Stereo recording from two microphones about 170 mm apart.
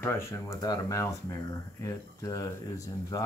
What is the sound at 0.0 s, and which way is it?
Speech, 15° left (ahead or behind).